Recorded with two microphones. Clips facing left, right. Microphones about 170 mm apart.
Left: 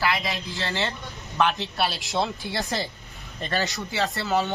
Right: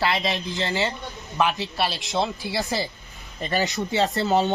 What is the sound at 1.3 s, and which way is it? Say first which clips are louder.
Speech: even; 5° right (ahead or behind).